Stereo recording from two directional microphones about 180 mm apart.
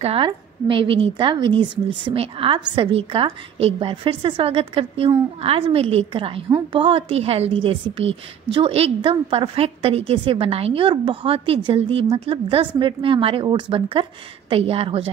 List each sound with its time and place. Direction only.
0.0 s a woman's voice: 30° right (ahead or behind)